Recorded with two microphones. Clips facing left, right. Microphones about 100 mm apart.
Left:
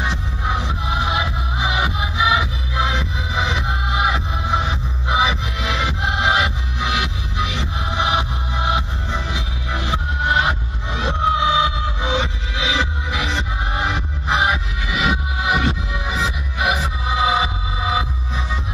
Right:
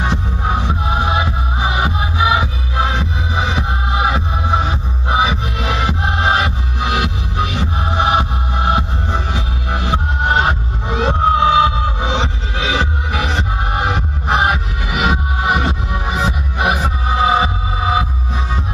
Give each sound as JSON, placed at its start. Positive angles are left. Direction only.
{"t": 0.0, "sound": "music", "side_deg": -45}